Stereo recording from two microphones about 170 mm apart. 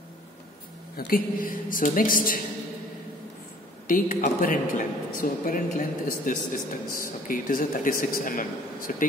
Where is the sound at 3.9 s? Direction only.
55° left (ahead or behind).